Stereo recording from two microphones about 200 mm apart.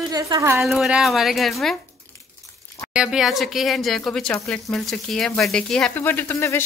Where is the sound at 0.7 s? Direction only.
Centre (ahead or behind).